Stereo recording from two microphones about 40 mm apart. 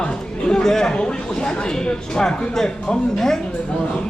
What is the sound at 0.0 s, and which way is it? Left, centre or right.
Speech, left.